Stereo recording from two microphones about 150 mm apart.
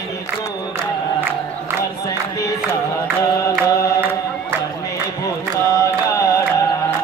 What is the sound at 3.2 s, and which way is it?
Music, 20° left (ahead or behind).